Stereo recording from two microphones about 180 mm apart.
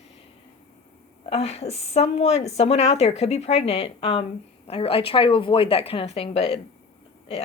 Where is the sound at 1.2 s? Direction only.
35° left (ahead or behind).